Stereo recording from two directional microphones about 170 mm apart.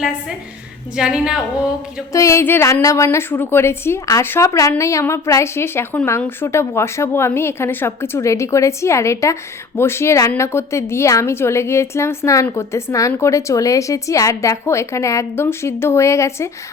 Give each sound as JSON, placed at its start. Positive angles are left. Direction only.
{"t": 0.9, "sound": "a woman's voice", "side_deg": -5}
{"t": 2.1, "sound": "a woman's voice", "side_deg": 15}